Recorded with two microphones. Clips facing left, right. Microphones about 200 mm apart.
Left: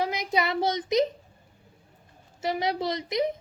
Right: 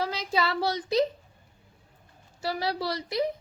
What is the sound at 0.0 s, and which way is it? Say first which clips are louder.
Speech: left 1 dB; 15° left (ahead or behind).